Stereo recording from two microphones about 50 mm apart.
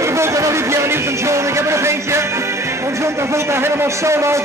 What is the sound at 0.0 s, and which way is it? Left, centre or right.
Speech, right.